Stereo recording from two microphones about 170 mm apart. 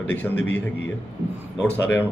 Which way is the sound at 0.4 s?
90° left.